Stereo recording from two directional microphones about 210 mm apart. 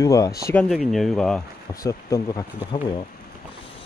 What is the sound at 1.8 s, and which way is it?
Speech, 15° left (ahead or behind).